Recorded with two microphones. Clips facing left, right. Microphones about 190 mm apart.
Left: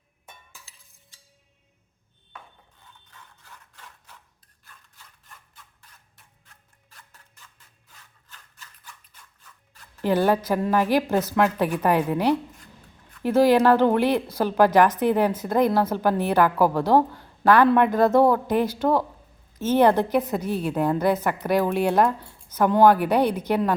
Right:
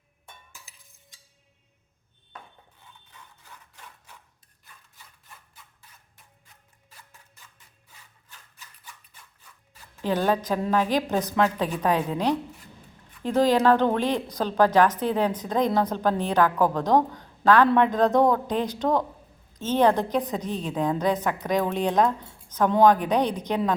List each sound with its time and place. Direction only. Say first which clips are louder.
3.4 s scissors: right 1 dB; 15° right (ahead or behind)
6.9 s a sound: right 1 dB; 10° right (ahead or behind)
7.9 s scissors: left 1 dB; 10° right (ahead or behind)
10.0 s a woman's voice: left 3 dB; 10° left (ahead or behind)